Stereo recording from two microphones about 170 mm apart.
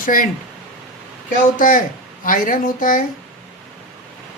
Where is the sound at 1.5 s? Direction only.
55° left (ahead or behind).